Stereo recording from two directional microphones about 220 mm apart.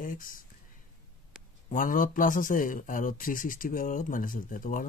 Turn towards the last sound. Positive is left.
turn(degrees=40)  # may be behind; listen again after turning